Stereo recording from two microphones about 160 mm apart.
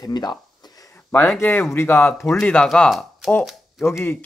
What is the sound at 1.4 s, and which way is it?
Speech, 15° left (ahead or behind).